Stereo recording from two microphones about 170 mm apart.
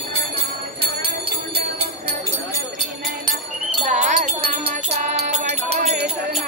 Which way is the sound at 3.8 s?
45° right (ahead or behind).